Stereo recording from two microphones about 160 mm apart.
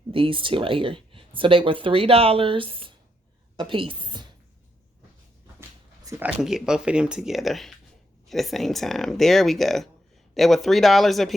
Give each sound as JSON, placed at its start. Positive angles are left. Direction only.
{"t": 0.1, "sound": "speech", "side_deg": -35}
{"t": 6.1, "sound": "speech", "side_deg": -10}